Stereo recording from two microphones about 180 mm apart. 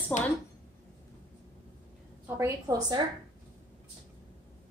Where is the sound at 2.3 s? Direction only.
15° right (ahead or behind).